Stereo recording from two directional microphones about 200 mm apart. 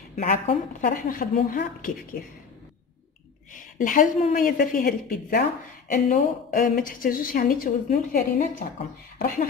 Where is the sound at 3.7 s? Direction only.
40° left (ahead or behind).